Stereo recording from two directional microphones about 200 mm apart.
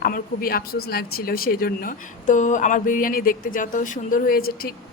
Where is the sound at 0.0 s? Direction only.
45° left (ahead or behind).